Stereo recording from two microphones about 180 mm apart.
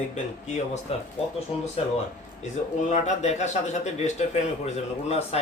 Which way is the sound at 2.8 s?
40° left (ahead or behind).